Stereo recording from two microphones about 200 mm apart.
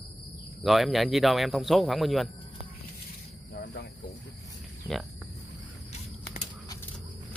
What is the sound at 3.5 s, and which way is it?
Cricket, 60° left (ahead or behind).